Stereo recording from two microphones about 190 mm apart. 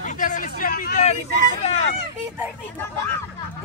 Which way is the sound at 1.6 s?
35° left (ahead or behind).